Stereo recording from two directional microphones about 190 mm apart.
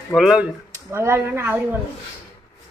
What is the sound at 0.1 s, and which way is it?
A man's voice, centre (ahead or behind).